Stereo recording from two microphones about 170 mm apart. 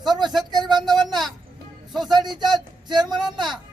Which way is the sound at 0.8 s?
25° right (ahead or behind).